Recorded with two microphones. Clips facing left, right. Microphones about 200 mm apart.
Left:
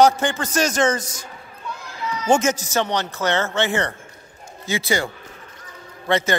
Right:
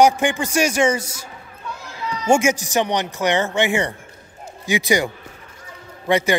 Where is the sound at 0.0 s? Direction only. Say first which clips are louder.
Right 1 dB; 15° right (ahead or behind).